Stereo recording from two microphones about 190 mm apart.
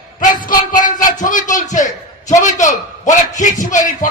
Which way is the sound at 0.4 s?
45° left (ahead or behind).